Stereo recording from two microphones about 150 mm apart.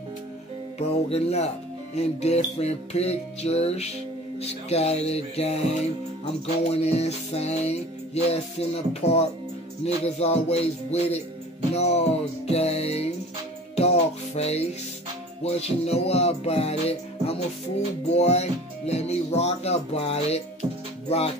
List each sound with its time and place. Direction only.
0.7 s music: 45° left (ahead or behind)